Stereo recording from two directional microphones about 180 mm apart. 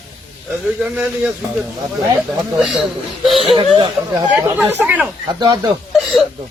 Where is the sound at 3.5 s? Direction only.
30° right (ahead or behind).